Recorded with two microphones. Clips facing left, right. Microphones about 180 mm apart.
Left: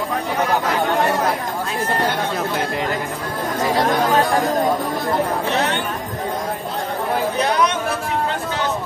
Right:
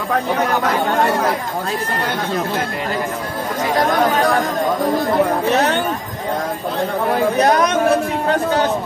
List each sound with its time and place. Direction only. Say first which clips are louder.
7.3 s speech: right 4 dB; 45° right (ahead or behind)